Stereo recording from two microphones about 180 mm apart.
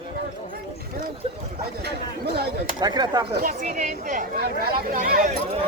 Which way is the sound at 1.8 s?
65° right (ahead or behind).